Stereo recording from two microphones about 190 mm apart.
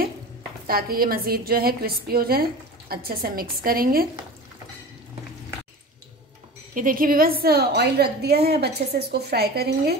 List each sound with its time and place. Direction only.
0.7 s a woman's voice: 50° right (ahead or behind)
6.7 s a woman's voice: 45° right (ahead or behind)